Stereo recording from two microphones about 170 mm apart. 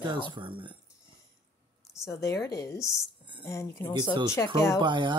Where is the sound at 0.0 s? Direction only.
25° right (ahead or behind).